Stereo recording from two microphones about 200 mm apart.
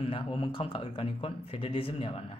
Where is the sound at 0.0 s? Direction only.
25° left (ahead or behind).